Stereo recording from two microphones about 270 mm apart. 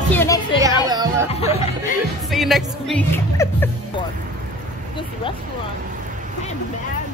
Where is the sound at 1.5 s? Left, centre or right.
Left.